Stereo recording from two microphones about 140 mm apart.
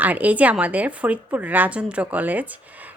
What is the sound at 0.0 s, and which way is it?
Speech, 10° right (ahead or behind).